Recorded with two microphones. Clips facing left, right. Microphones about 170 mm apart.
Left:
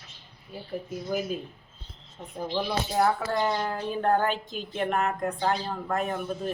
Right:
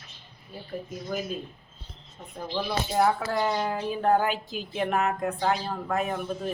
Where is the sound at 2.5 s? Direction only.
5° left (ahead or behind).